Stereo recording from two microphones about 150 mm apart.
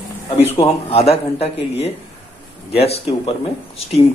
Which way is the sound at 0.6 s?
40° left (ahead or behind).